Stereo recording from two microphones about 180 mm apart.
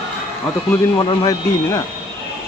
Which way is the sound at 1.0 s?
20° left (ahead or behind).